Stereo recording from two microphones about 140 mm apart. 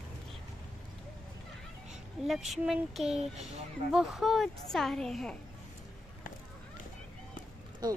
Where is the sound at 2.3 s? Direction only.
Centre (ahead or behind).